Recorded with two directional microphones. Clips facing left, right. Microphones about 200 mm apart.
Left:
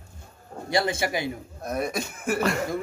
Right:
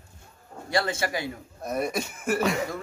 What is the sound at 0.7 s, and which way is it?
Speech, 15° left (ahead or behind).